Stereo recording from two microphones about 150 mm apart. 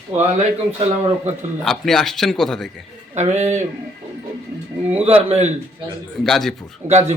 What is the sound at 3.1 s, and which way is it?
Speech, 50° right (ahead or behind).